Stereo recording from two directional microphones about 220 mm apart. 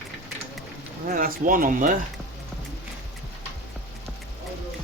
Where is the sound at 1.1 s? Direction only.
40° right (ahead or behind).